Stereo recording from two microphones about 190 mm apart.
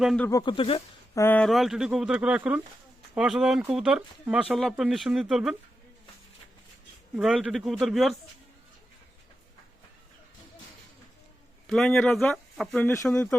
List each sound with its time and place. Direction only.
0.0 s speech: centre (ahead or behind)
0.3 s speech: 20° left (ahead or behind)
1.1 s speech: 10° left (ahead or behind)
7.2 s speech: centre (ahead or behind)
11.7 s speech: centre (ahead or behind)